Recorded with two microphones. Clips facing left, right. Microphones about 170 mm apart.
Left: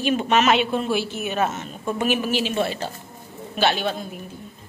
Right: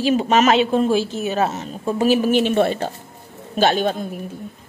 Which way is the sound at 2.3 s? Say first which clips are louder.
Right 6 dB; 55° right (ahead or behind).